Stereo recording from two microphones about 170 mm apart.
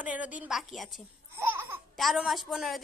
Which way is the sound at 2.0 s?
Centre (ahead or behind).